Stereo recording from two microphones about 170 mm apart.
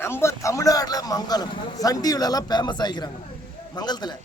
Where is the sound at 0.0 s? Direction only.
15° left (ahead or behind).